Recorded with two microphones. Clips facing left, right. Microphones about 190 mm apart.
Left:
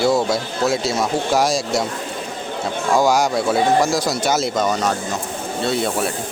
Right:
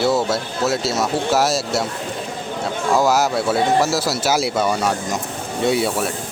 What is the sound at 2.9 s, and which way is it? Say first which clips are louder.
Speech: left 1 dB; 5° right (ahead or behind).